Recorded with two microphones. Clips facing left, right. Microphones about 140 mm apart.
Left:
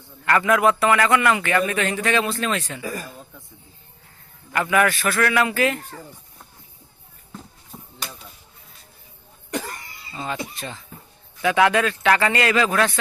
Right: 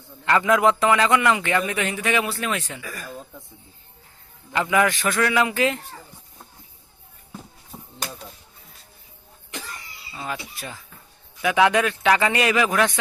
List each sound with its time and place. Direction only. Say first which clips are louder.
0.3 s a man's voice: even; 20° right (ahead or behind)
2.8 s speech: left 6 dB; 25° left (ahead or behind)
4.5 s a man's voice: left 1 dB; 15° right (ahead or behind)
9.5 s cough: left 8 dB; 50° left (ahead or behind)
10.6 s speech: left 2 dB; 5° right (ahead or behind)
11.3 s a man's voice: even; 15° right (ahead or behind)